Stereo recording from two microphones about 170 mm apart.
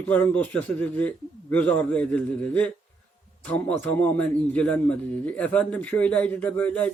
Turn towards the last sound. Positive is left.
turn(degrees=10)  # may be behind; listen again after turning